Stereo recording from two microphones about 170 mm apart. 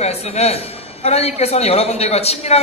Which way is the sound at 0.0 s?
40° left (ahead or behind).